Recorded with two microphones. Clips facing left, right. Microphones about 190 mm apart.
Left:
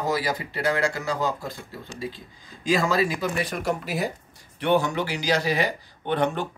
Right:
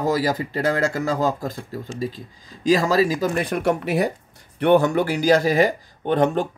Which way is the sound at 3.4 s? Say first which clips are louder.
Right 6 dB; 55° right (ahead or behind).